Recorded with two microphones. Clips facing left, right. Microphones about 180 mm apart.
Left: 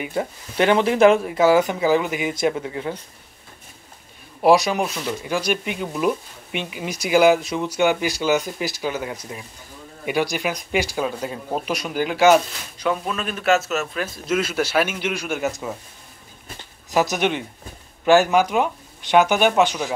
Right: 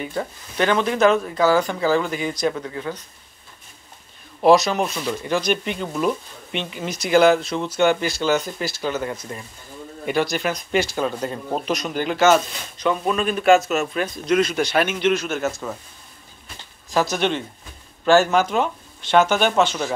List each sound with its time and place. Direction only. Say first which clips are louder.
0.0 s speech: left 2 dB; 20° left (ahead or behind)
4.4 s speech: right 1 dB; 10° left (ahead or behind)
16.9 s speech: left 1 dB; 15° left (ahead or behind)